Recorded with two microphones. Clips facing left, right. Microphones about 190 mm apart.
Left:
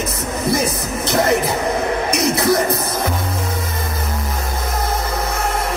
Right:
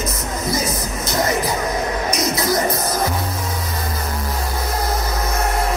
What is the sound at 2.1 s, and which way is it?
Music, 65° left (ahead or behind).